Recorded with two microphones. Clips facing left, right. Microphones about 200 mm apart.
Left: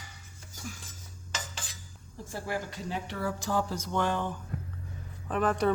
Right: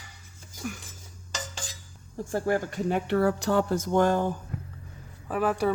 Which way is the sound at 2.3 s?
50° right (ahead or behind).